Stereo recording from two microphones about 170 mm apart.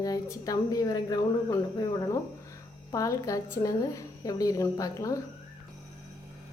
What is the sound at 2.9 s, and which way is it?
A woman's voice, 20° left (ahead or behind).